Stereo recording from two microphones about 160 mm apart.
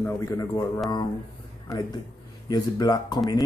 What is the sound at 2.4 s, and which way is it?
Speech, 25° left (ahead or behind).